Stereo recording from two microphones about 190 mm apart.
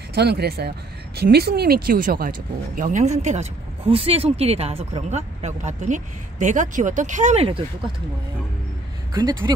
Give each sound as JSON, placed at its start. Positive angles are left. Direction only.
{"t": 0.1, "sound": "speech", "side_deg": -60}
{"t": 9.1, "sound": "speech", "side_deg": -20}